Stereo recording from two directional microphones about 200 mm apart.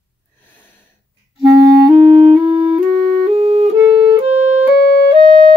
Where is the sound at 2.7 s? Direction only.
Centre (ahead or behind).